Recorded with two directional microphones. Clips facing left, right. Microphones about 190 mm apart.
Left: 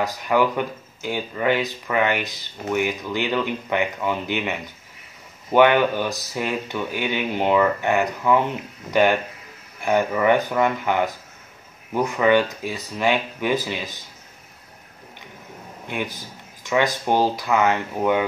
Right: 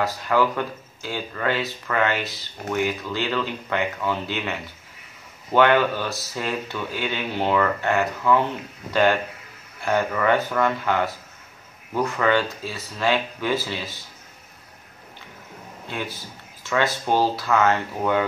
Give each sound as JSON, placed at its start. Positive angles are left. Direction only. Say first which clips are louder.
{"t": 0.0, "sound": "speech", "louder": "left 1 dB", "side_deg": 15}
{"t": 15.9, "sound": "speech", "louder": "left 3 dB", "side_deg": 15}